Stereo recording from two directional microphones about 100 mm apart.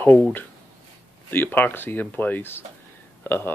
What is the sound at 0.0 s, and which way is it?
Speech, 15° left (ahead or behind).